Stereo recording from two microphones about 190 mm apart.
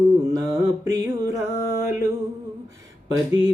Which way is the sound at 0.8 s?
15° right (ahead or behind).